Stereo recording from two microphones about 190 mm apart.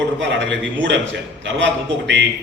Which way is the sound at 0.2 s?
70° right (ahead or behind).